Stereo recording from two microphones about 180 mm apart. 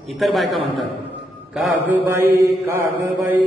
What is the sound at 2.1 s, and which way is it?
Speech, 15° right (ahead or behind).